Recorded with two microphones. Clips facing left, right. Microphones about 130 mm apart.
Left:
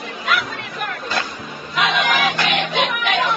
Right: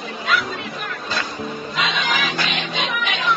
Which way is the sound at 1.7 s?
60° left (ahead or behind).